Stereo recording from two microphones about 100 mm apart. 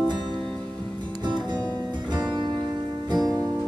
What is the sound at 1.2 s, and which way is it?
Music, 50° right (ahead or behind).